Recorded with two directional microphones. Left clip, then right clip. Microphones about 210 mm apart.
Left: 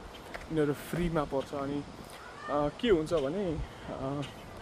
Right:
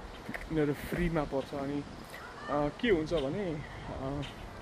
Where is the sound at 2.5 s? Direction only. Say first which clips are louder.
Left 2 dB; 15° left (ahead or behind).